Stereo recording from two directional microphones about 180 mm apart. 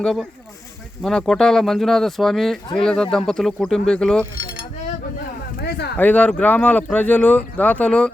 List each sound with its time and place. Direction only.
0.0 s speech: centre (ahead or behind)
5.5 s a sound: 65° left (ahead or behind)
6.0 s speech: 10° left (ahead or behind)